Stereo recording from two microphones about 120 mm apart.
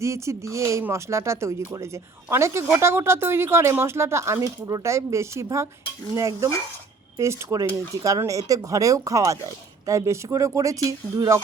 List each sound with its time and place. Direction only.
0.0 s speech: 25° right (ahead or behind)